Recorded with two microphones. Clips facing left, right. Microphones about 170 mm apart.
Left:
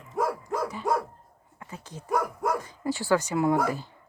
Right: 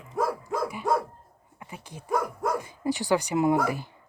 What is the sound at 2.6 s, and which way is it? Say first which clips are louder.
A woman's voice: right 2 dB; 15° right (ahead or behind).